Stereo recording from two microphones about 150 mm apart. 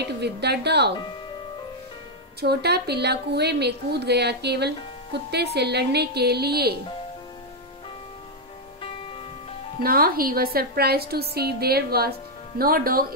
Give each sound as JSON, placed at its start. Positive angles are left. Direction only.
{"t": 0.2, "sound": "a woman's voice", "side_deg": -90}
{"t": 2.4, "sound": "a woman's voice", "side_deg": -90}
{"t": 9.8, "sound": "a woman's voice", "side_deg": -80}